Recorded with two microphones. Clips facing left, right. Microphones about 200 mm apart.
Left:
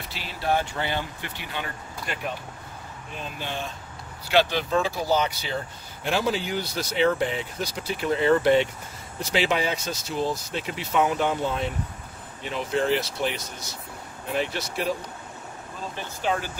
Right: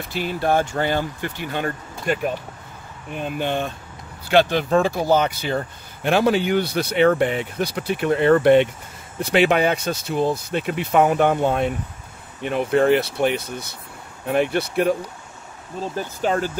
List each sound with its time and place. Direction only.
0.1 s speech: 50° right (ahead or behind)
3.1 s speech: 60° right (ahead or behind)
16.2 s speech: 45° right (ahead or behind)